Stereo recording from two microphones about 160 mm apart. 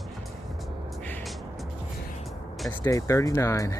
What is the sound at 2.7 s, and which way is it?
Speech, 15° left (ahead or behind).